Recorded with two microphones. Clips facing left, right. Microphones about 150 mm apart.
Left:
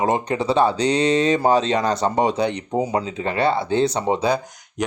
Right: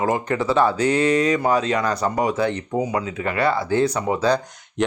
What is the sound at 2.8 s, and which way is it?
Speech, 30° left (ahead or behind).